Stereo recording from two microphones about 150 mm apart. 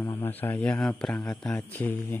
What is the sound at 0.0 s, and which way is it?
Speech, 15° left (ahead or behind).